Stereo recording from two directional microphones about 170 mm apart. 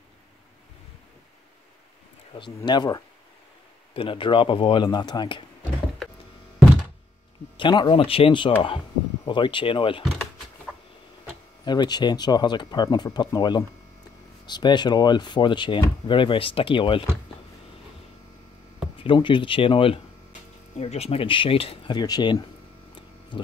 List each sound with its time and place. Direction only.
2.3 s speech: 25° left (ahead or behind)
7.5 s speech: 25° left (ahead or behind)
11.6 s speech: 25° left (ahead or behind)
18.9 s speech: 30° left (ahead or behind)